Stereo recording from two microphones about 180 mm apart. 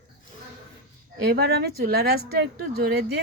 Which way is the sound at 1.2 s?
65° right (ahead or behind).